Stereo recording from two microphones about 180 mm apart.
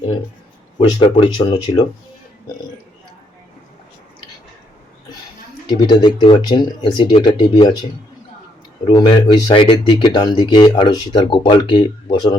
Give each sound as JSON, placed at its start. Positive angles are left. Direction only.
{"t": 0.8, "sound": "speech", "side_deg": 30}
{"t": 5.6, "sound": "speech", "side_deg": 25}
{"t": 8.9, "sound": "speech", "side_deg": 25}